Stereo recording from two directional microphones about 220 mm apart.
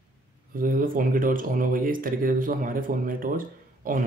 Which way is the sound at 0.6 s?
40° right (ahead or behind).